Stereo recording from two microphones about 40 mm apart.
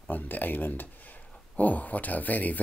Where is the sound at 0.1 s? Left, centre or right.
Left.